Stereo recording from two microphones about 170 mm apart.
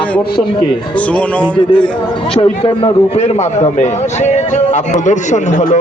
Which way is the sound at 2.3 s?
30° left (ahead or behind).